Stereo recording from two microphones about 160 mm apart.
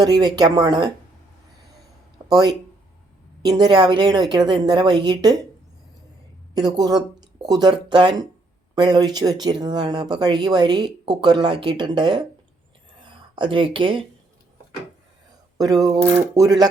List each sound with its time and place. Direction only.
0.0 s speech: 25° right (ahead or behind)
2.3 s speech: 25° right (ahead or behind)
6.5 s speech: 25° right (ahead or behind)
15.5 s speech: 20° right (ahead or behind)